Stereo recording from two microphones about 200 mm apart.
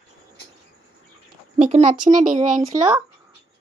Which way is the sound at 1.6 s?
35° right (ahead or behind).